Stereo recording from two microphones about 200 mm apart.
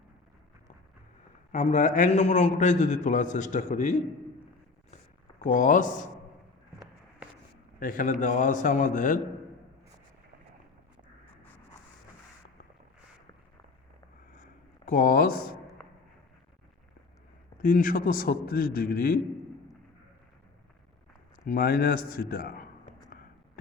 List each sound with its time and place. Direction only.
1.5 s a man's voice: 35° left (ahead or behind)
5.4 s a man's voice: 40° left (ahead or behind)
7.8 s a man's voice: 45° left (ahead or behind)
14.3 s a sound: 40° left (ahead or behind)
17.6 s a man's voice: 45° left (ahead or behind)
21.4 s a man's voice: 45° left (ahead or behind)